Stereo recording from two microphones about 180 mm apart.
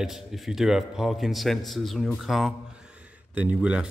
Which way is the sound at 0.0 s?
Centre (ahead or behind).